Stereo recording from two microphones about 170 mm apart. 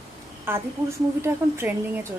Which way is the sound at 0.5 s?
15° right (ahead or behind).